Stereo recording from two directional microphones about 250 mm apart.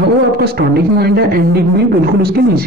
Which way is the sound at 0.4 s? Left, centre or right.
Right.